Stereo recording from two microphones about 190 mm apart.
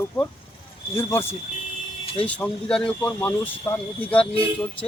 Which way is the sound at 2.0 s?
30° left (ahead or behind).